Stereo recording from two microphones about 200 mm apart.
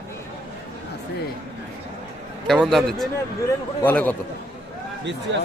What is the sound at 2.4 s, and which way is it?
A man's voice, centre (ahead or behind).